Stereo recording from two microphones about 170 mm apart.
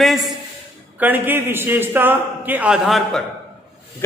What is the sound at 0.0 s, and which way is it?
A man's voice, centre (ahead or behind).